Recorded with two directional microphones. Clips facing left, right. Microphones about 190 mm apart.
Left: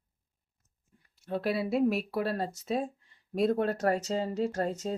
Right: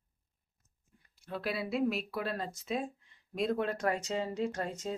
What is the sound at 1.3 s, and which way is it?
Speech, 40° left (ahead or behind).